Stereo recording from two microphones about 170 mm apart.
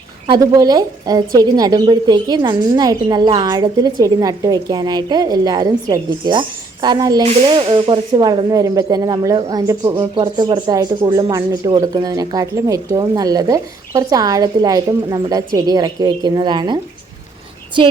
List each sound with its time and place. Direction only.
0.3 s a woman's voice: 20° right (ahead or behind)
17.7 s a woman's voice: 30° right (ahead or behind)